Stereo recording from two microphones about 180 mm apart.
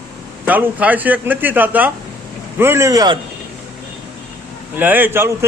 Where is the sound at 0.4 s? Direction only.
10° right (ahead or behind).